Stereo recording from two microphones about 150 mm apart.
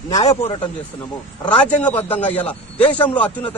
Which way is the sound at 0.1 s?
50° left (ahead or behind).